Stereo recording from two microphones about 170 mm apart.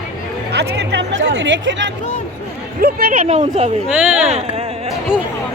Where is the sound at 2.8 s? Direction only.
60° right (ahead or behind); by 3.7 s 40° right (ahead or behind).